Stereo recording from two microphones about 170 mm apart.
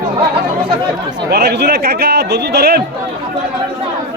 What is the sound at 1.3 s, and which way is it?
A man's voice, 70° right (ahead or behind).